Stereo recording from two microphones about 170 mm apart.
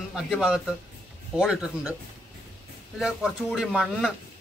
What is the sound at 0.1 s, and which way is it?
Speech, 5° right (ahead or behind).